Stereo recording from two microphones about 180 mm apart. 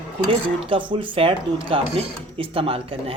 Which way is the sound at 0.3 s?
30° right (ahead or behind).